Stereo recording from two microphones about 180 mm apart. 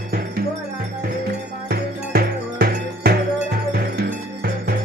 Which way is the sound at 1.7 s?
60° right (ahead or behind).